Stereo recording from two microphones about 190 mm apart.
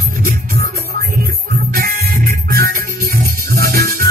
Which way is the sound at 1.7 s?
50° right (ahead or behind).